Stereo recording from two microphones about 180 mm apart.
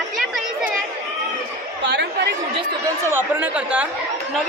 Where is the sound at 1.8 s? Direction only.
75° right (ahead or behind).